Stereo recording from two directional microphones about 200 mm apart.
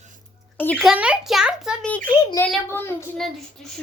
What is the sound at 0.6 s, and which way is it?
A child's voice, 5° left (ahead or behind).